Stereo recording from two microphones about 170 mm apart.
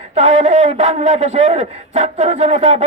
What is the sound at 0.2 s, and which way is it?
A man's voice, 40° right (ahead or behind).